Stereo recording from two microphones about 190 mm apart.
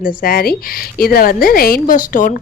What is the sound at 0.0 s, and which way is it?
A woman's voice, 50° left (ahead or behind).